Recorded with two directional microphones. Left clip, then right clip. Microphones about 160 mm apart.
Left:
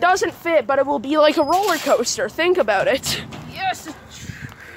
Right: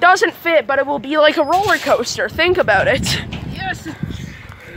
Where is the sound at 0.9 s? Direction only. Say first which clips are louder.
Right 3 dB; 10° left (ahead or behind).